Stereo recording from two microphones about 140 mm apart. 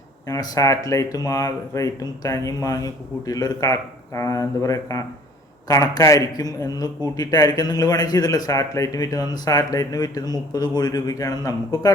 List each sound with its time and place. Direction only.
0.3 s a man's voice: 25° left (ahead or behind)